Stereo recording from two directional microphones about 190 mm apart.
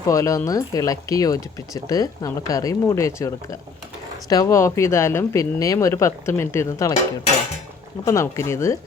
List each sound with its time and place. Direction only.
0.1 s speech: 15° left (ahead or behind)
8.0 s speech: 15° left (ahead or behind)